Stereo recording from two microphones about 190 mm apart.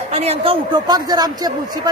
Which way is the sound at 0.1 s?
35° right (ahead or behind).